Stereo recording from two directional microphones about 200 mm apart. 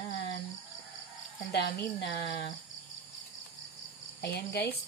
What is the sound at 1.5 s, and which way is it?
Speech, 55° left (ahead or behind).